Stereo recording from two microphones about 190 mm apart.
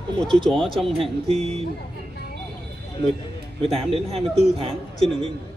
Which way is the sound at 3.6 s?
30° right (ahead or behind).